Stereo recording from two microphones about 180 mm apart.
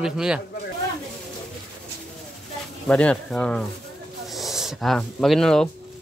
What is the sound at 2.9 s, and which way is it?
Speech, 5° left (ahead or behind).